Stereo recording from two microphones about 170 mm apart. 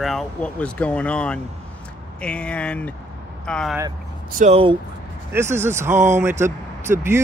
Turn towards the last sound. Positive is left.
turn(degrees=-15)  # may be behind; listen again after turning